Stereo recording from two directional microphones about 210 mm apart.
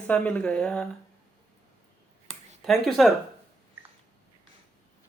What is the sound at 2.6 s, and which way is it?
Speech, centre (ahead or behind).